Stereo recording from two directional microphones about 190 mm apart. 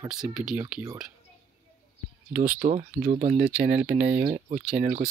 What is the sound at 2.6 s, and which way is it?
Speech, 40° right (ahead or behind).